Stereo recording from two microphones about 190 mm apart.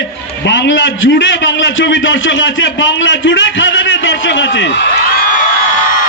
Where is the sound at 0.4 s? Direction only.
70° left (ahead or behind).